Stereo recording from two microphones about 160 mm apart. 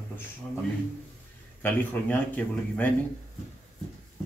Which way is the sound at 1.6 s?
10° left (ahead or behind).